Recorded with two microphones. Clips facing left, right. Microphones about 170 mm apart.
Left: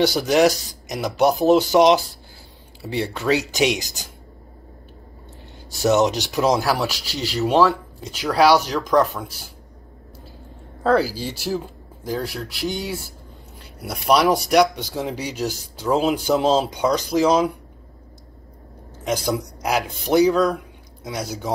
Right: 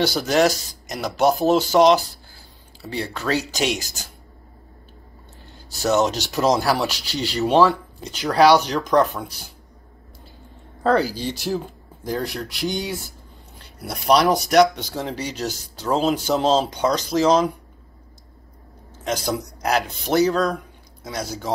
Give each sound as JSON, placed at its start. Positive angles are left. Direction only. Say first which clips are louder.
{"t": 0.0, "sound": "speech", "louder": "left 2 dB", "side_deg": 15}
{"t": 5.8, "sound": "speech", "louder": "left 2 dB", "side_deg": 20}
{"t": 10.8, "sound": "speech", "louder": "left 1 dB", "side_deg": 5}
{"t": 19.0, "sound": "speech", "louder": "left 2 dB", "side_deg": 10}